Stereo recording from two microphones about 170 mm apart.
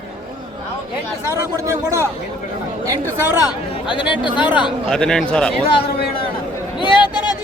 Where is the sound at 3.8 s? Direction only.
30° left (ahead or behind).